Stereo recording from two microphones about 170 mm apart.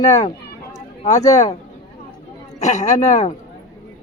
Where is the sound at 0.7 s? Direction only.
45° left (ahead or behind).